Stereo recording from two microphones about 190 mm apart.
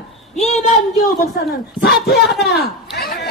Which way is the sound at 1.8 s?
55° left (ahead or behind).